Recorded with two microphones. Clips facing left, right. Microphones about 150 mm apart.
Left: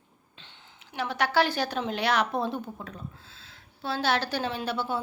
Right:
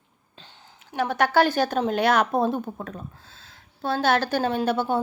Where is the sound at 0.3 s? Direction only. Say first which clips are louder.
Right 4 dB; 40° right (ahead or behind).